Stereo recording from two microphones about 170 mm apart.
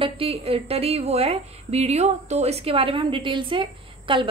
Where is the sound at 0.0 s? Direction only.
35° right (ahead or behind).